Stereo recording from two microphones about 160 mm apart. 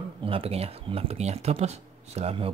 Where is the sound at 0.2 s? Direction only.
35° right (ahead or behind).